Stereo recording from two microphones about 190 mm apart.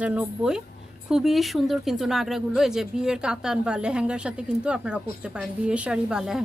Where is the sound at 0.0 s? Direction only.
5° right (ahead or behind).